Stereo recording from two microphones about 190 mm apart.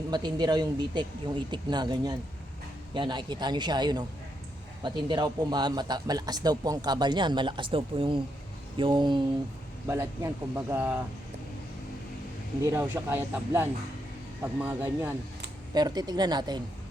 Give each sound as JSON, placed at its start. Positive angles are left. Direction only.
{"t": 0.1, "sound": "a man's voice", "side_deg": -20}
{"t": 12.6, "sound": "speech", "side_deg": -15}
{"t": 15.7, "sound": "a man's voice", "side_deg": -20}